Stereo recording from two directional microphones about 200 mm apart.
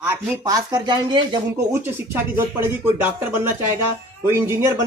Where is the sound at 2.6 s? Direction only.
10° right (ahead or behind).